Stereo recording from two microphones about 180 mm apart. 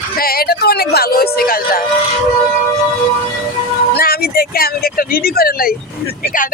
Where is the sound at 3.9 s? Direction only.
55° left (ahead or behind).